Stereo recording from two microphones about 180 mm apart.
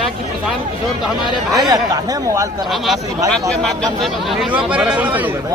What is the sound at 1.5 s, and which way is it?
Speech, 20° right (ahead or behind).